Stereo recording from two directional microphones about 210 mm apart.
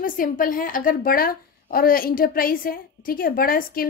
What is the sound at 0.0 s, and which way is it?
A woman's voice, 40° left (ahead or behind).